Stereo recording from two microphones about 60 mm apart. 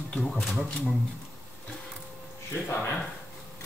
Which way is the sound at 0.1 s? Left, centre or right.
Centre.